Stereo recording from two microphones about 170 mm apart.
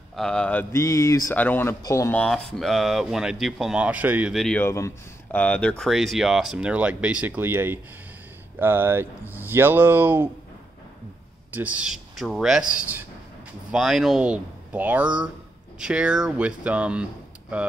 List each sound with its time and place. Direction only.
0.1 s speech: 5° left (ahead or behind)
2.2 s speech: 5° left (ahead or behind)
4.4 s speech: 10° left (ahead or behind); by 10.3 s 10° right (ahead or behind)
11.5 s speech: 10° right (ahead or behind)